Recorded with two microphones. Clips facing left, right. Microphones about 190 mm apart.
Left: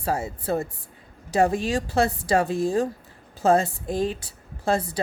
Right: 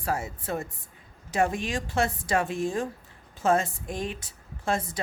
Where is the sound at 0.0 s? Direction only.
30° left (ahead or behind).